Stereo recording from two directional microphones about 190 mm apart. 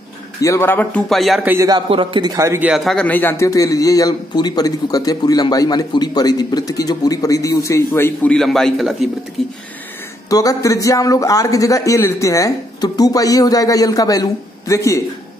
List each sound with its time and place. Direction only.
0.4 s a man's voice: 15° left (ahead or behind)
1.5 s a man's voice: 15° right (ahead or behind)
1.9 s a man's voice: 25° right (ahead or behind)
2.7 s a man's voice: centre (ahead or behind)
10.3 s a man's voice: 20° left (ahead or behind)